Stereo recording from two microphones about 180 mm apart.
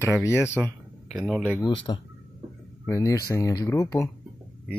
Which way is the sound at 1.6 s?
25° left (ahead or behind).